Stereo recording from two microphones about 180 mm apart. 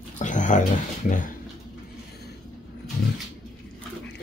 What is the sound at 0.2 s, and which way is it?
Speech, 45° left (ahead or behind).